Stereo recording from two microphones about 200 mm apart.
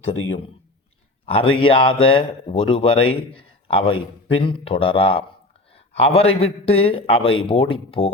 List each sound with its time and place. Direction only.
1.2 s speech: 25° left (ahead or behind)
5.7 s a sound: 30° left (ahead or behind)
6.4 s speech: 30° left (ahead or behind)